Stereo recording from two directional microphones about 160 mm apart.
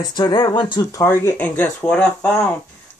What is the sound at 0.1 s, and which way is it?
Speech, 25° left (ahead or behind).